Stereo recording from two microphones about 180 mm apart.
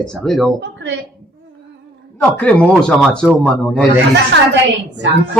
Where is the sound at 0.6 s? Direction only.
75° right (ahead or behind).